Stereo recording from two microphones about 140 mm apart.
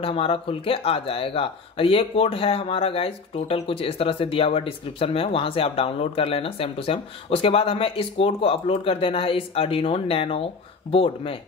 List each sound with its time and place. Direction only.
0.0 s speech: 40° left (ahead or behind)